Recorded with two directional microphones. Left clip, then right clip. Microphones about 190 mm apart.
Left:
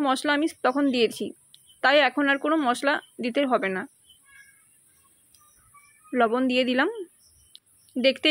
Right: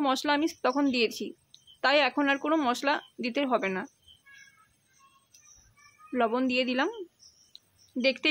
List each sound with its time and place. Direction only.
0.0 s speech: 10° left (ahead or behind)
6.1 s speech: 10° left (ahead or behind)
8.0 s speech: 15° left (ahead or behind)